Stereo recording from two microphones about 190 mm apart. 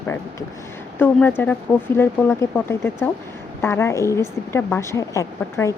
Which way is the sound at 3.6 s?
15° left (ahead or behind).